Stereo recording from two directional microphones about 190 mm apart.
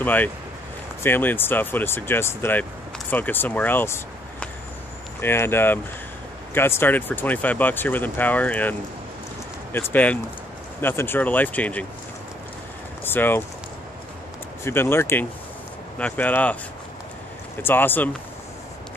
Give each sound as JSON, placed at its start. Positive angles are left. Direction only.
{"t": 0.0, "sound": "speech", "side_deg": 10}
{"t": 13.0, "sound": "speech", "side_deg": 10}
{"t": 14.6, "sound": "speech", "side_deg": 10}
{"t": 17.6, "sound": "speech", "side_deg": 10}